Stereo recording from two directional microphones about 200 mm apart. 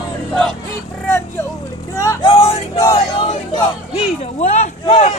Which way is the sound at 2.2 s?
30° left (ahead or behind).